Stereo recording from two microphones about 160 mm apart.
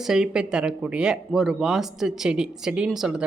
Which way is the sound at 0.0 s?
5° right (ahead or behind).